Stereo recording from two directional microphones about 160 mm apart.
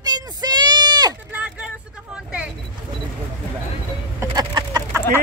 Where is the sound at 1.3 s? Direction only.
10° right (ahead or behind).